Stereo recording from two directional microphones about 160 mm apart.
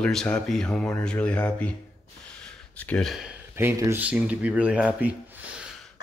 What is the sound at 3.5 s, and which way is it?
Speech, 15° right (ahead or behind).